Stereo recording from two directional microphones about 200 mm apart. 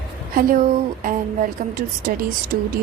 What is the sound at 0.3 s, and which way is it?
A woman's voice, 45° right (ahead or behind).